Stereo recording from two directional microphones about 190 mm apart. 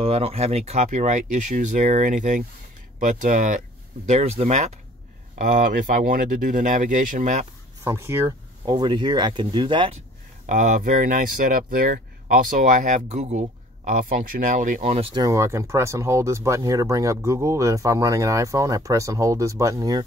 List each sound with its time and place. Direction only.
0.0 s speech: 30° right (ahead or behind)
7.8 s speech: 15° right (ahead or behind)
8.6 s speech: 25° right (ahead or behind)
10.4 s speech: 40° right (ahead or behind)
15.1 s speech: 20° right (ahead or behind)